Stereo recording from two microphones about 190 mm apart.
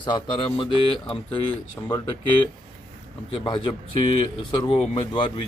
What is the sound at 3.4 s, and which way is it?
Speech, 25° left (ahead or behind).